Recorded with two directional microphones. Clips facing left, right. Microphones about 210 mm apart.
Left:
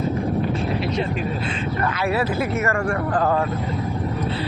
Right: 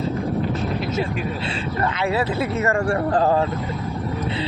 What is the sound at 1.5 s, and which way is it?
Speech, 25° right (ahead or behind).